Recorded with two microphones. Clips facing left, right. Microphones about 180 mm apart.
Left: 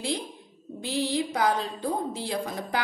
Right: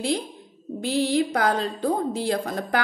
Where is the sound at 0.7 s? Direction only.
60° right (ahead or behind).